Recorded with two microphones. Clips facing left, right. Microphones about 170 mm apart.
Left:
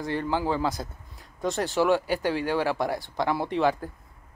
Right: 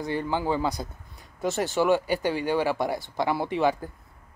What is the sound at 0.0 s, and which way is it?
Speech, centre (ahead or behind).